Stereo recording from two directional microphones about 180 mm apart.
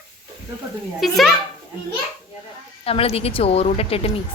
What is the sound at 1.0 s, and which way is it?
Speech, centre (ahead or behind).